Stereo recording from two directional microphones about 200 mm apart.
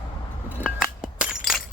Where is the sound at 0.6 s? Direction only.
5° right (ahead or behind).